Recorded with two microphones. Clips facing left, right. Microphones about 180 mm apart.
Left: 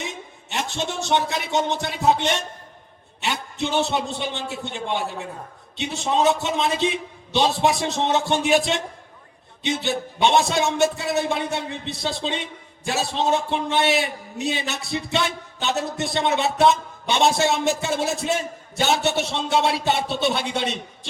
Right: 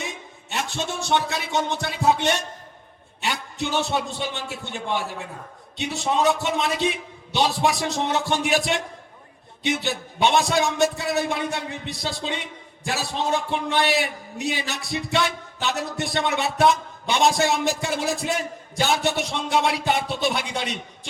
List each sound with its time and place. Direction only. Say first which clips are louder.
0.5 s speech: left 1 dB; 20° left (ahead or behind)
9.8 s a man's voice: left 4 dB; 25° left (ahead or behind)